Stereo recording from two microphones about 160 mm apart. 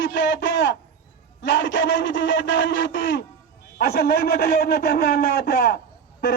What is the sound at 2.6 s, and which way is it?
A man's voice, 90° left.